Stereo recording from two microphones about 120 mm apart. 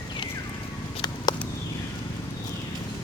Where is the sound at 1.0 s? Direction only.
35° left (ahead or behind).